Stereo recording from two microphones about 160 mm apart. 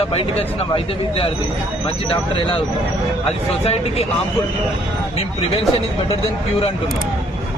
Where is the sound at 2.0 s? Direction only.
35° left (ahead or behind).